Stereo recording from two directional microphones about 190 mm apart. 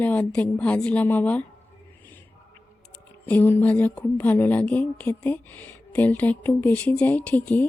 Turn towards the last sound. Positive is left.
turn(degrees=10)  # may be behind; listen again after turning